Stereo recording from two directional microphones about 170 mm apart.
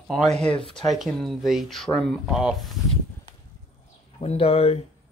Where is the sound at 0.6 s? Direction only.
30° left (ahead or behind).